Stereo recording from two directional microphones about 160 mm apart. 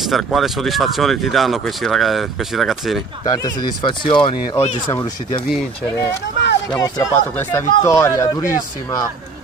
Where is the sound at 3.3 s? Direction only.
25° left (ahead or behind).